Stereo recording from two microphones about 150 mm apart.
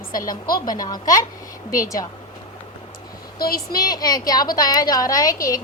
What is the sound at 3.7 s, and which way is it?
A woman's voice, 25° left (ahead or behind).